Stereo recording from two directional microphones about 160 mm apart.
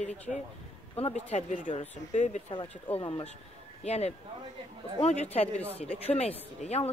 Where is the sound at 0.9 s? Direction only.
40° left (ahead or behind).